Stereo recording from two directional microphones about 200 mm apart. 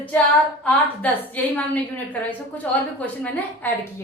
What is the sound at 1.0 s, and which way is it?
A woman's voice, 10° left (ahead or behind).